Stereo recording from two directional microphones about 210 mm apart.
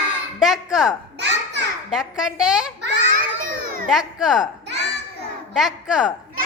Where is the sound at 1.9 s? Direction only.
Centre (ahead or behind).